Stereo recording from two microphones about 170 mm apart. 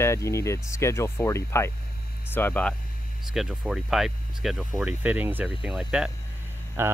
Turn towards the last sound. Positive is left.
turn(degrees=-15)  # may be behind; listen again after turning